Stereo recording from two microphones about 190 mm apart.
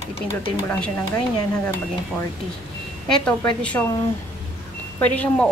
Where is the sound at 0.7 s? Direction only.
10° left (ahead or behind).